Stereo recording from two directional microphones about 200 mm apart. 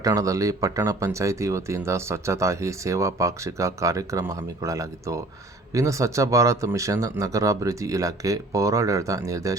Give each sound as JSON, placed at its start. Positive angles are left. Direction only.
{"t": 0.0, "sound": "speech", "side_deg": -15}